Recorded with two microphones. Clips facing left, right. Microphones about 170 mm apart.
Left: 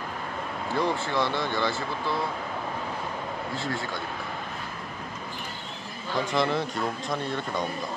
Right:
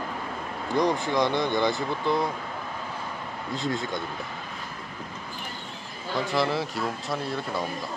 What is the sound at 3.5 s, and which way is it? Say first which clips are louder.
Speech: right 6 dB; 20° right (ahead or behind).